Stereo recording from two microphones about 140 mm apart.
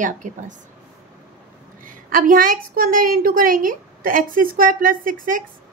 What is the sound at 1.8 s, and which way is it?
A woman's voice, 70° right (ahead or behind).